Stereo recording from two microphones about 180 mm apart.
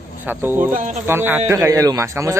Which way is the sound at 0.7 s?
45° right (ahead or behind).